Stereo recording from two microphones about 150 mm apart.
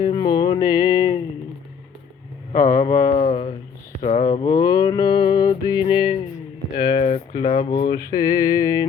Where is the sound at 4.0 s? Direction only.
35° left (ahead or behind).